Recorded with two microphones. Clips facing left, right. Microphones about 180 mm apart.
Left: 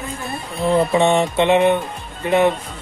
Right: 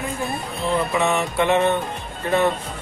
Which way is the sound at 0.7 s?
30° left (ahead or behind).